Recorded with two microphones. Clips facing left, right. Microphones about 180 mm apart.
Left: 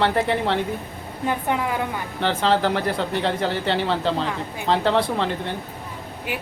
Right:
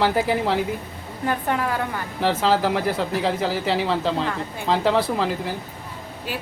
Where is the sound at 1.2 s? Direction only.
15° left (ahead or behind).